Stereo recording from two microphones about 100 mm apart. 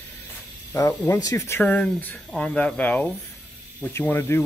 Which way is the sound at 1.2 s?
35° left (ahead or behind).